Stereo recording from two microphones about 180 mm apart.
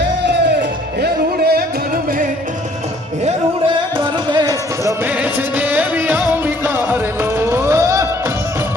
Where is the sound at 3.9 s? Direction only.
25° right (ahead or behind).